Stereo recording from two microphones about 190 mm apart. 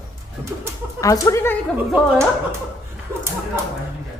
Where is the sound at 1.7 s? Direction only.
10° right (ahead or behind).